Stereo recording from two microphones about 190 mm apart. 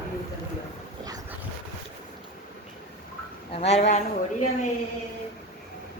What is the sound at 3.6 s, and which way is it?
Speech, 35° left (ahead or behind).